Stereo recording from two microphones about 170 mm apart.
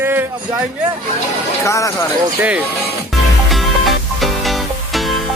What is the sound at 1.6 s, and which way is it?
Speech, 20° left (ahead or behind).